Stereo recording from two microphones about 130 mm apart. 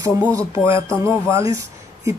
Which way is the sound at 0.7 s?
20° right (ahead or behind).